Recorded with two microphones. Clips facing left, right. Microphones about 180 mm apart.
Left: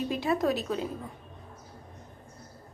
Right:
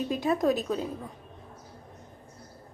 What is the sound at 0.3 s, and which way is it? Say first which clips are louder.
Speech: right 2 dB; 20° right (ahead or behind).